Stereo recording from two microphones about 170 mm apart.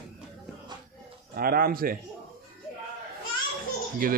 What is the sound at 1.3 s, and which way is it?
Speech, 60° right (ahead or behind).